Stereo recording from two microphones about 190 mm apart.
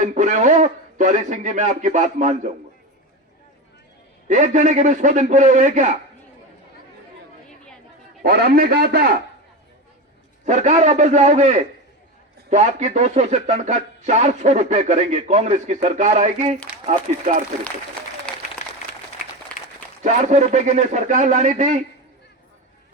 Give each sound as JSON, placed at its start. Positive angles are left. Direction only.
{"t": 0.0, "sound": "speech", "side_deg": -40}
{"t": 4.3, "sound": "speech", "side_deg": -40}
{"t": 8.2, "sound": "a man's voice", "side_deg": -50}
{"t": 10.4, "sound": "speech", "side_deg": -40}
{"t": 20.1, "sound": "speech", "side_deg": -40}